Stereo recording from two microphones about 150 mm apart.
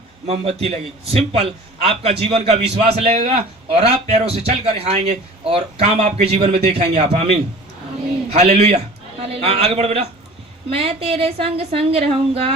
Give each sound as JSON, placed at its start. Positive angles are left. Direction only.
{"t": 0.3, "sound": "a man's voice", "side_deg": -45}
{"t": 8.3, "sound": "a man's voice", "side_deg": -45}